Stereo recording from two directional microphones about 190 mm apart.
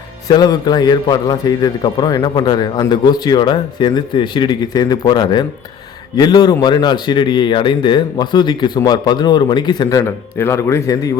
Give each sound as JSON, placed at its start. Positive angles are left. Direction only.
{"t": 0.3, "sound": "a man's voice", "side_deg": 20}